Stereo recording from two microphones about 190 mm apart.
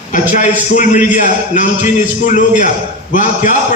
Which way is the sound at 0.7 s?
40° left (ahead or behind).